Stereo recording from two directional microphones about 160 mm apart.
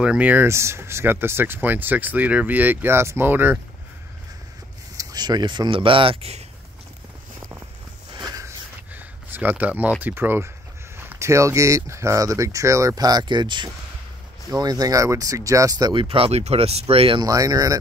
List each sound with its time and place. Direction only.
0.0 s speech: 5° right (ahead or behind)
4.9 s speech: 25° right (ahead or behind)
8.1 s a sound: 25° right (ahead or behind); by 9.9 s 10° right (ahead or behind)
10.0 s speech: 15° right (ahead or behind); by 17.3 s 35° right (ahead or behind)
17.3 s speech: 20° right (ahead or behind)